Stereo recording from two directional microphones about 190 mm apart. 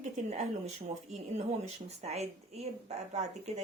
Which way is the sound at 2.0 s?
35° right (ahead or behind).